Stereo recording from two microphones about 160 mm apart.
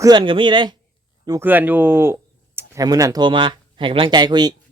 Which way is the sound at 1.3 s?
15° right (ahead or behind).